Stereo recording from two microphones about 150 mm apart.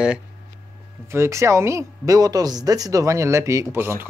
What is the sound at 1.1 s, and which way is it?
Speech, 20° right (ahead or behind).